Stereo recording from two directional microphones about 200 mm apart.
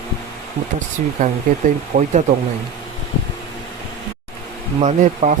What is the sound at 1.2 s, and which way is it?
Speech, 40° right (ahead or behind).